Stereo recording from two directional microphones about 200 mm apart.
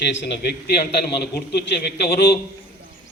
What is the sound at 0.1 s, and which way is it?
A man's voice, 60° left (ahead or behind).